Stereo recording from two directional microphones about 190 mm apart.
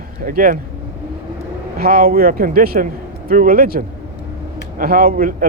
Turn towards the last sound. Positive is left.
turn(degrees=-45)  # may be behind; listen again after turning